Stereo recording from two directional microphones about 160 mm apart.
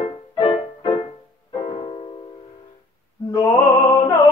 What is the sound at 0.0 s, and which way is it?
Music, 35° left (ahead or behind).